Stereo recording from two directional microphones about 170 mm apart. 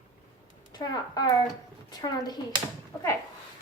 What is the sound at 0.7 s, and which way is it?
A woman's voice, 25° left (ahead or behind).